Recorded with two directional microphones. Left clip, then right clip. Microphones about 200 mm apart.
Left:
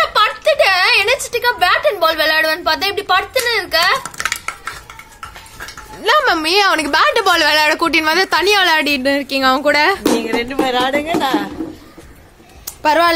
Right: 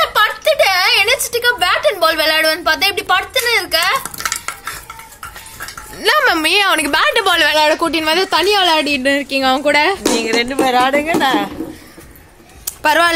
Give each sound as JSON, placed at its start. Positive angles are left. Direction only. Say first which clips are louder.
{"t": 0.0, "sound": "a sound", "louder": "even", "side_deg": 0}
{"t": 4.3, "sound": "stir", "louder": "right 1 dB", "side_deg": 25}
{"t": 5.9, "sound": "a woman's voice", "louder": "even", "side_deg": -10}
{"t": 10.2, "sound": "music", "louder": "right 3 dB", "side_deg": -20}
{"t": 10.5, "sound": "a woman's voice", "louder": "right 2 dB", "side_deg": -40}
{"t": 12.6, "sound": "a sound", "louder": "even", "side_deg": 0}